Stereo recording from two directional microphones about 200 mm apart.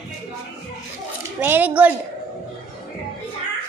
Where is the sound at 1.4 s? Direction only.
10° right (ahead or behind).